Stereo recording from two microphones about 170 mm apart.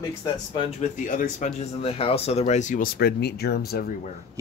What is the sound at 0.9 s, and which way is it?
Speech, 50° left (ahead or behind).